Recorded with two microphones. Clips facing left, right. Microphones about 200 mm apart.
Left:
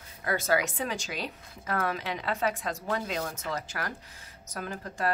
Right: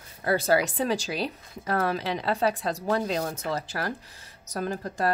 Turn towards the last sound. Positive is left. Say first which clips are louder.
# right 5 dB
turn(degrees=-35)  # may be behind; listen again after turning